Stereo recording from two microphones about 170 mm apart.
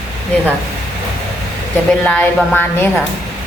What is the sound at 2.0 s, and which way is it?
Speech, 10° left (ahead or behind).